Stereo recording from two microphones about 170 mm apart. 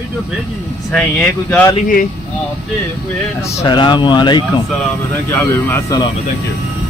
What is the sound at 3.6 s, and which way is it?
Speech, 25° left (ahead or behind).